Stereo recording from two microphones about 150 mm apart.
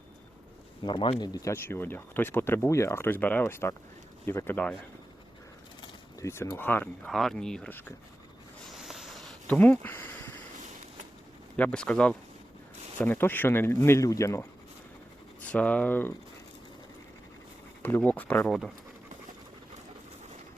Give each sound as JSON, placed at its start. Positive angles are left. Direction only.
{"t": 0.8, "sound": "speech", "side_deg": 30}
{"t": 6.1, "sound": "speech", "side_deg": 20}
{"t": 7.1, "sound": "speech", "side_deg": 0}
{"t": 8.7, "sound": "a sound", "side_deg": 0}
{"t": 11.5, "sound": "speech", "side_deg": 10}
{"t": 15.4, "sound": "speech", "side_deg": 10}
{"t": 17.8, "sound": "speech", "side_deg": 10}